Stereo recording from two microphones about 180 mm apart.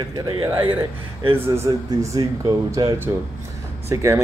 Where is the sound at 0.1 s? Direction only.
20° right (ahead or behind).